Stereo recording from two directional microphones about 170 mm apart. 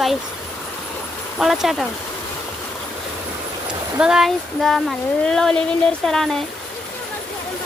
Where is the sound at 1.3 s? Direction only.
Centre (ahead or behind).